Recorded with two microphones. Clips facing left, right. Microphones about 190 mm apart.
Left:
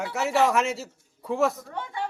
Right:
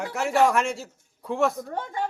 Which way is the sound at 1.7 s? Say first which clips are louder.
Right 3 dB; 40° right (ahead or behind).